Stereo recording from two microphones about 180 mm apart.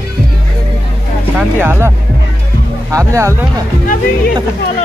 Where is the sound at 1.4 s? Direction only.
10° right (ahead or behind).